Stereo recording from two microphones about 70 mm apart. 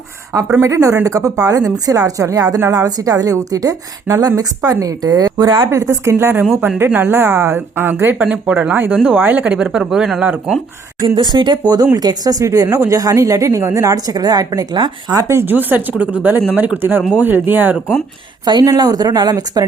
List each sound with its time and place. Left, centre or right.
0.6 s speech: right
5.7 s a woman's voice: right
8.2 s speech: centre
11.0 s speech: right
11.9 s speech: right
15.4 s speech: right
18.4 s speech: right
18.8 s speech: right